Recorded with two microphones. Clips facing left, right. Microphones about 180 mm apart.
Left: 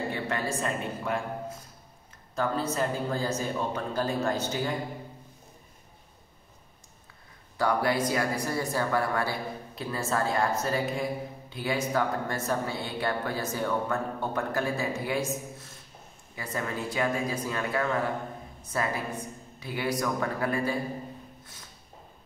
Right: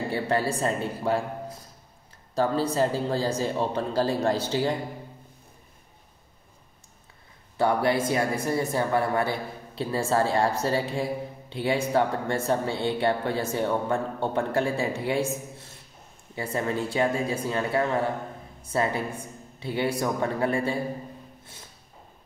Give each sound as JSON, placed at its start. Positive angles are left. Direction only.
{"t": 0.1, "sound": "a man's voice", "side_deg": -35}
{"t": 2.3, "sound": "a man's voice", "side_deg": -30}
{"t": 7.5, "sound": "a woman's voice", "side_deg": -25}
{"t": 16.3, "sound": "a woman's voice", "side_deg": -30}